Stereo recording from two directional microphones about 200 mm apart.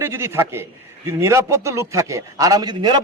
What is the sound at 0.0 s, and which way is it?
A man's voice, 10° right (ahead or behind).